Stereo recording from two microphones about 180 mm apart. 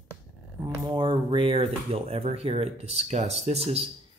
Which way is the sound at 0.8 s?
25° right (ahead or behind).